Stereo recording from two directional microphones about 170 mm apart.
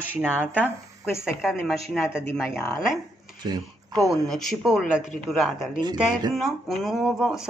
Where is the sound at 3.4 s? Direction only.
25° right (ahead or behind).